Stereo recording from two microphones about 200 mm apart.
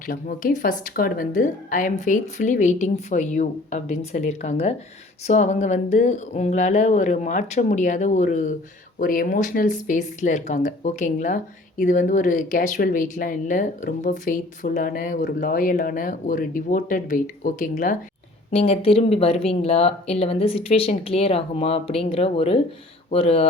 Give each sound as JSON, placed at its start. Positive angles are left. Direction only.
{"t": 0.0, "sound": "speech", "side_deg": 45}